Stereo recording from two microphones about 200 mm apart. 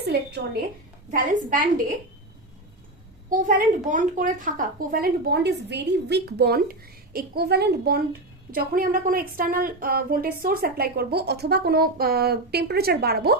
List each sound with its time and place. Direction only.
0.0 s a woman's voice: 55° right (ahead or behind)
1.1 s a woman's voice: 40° right (ahead or behind)
3.2 s a woman's voice: 40° right (ahead or behind)